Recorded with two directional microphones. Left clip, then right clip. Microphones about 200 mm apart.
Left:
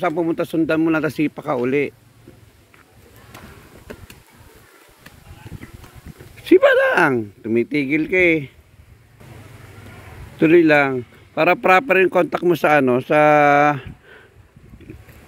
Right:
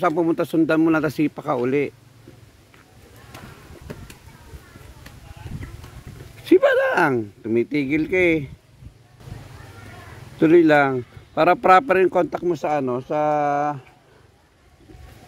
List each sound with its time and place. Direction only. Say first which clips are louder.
0.2 s speech: even; 10° right (ahead or behind)
6.4 s speech: left 3 dB; centre (ahead or behind)
10.4 s speech: left 1 dB; 5° right (ahead or behind)
12.5 s speech: left 7 dB; 20° left (ahead or behind)